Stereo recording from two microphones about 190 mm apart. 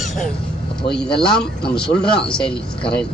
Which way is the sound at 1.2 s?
5° left (ahead or behind).